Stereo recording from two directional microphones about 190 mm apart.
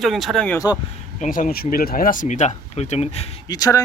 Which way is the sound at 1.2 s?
45° left (ahead or behind).